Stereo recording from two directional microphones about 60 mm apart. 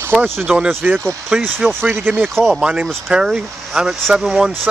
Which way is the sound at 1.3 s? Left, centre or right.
Centre.